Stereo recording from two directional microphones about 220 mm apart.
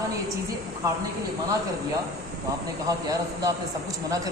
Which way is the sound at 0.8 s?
15° right (ahead or behind).